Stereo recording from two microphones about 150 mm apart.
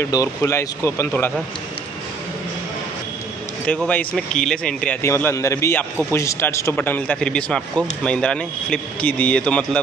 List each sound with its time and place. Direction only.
0.0 s a man's voice: 20° left (ahead or behind)
3.6 s speech: 10° left (ahead or behind)
5.0 s a man's voice: 20° left (ahead or behind)